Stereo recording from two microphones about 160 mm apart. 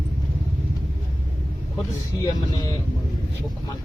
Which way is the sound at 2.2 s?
20° left (ahead or behind).